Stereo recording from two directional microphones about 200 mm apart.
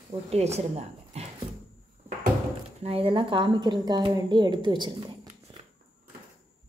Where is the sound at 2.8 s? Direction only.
30° right (ahead or behind).